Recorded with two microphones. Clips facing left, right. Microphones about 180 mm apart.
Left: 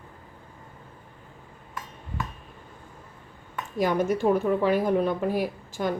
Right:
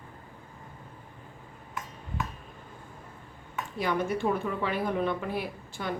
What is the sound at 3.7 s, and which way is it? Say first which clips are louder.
A woman's voice: left 5 dB; 40° left (ahead or behind).